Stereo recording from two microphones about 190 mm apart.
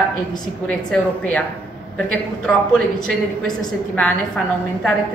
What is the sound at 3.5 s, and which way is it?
Speech, 5° left (ahead or behind).